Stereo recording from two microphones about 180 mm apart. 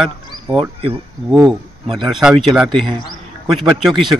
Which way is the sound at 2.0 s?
Centre (ahead or behind).